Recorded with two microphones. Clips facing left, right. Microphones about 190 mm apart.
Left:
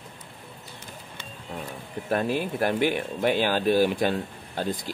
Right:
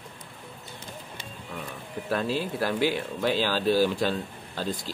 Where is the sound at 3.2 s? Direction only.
55° left (ahead or behind).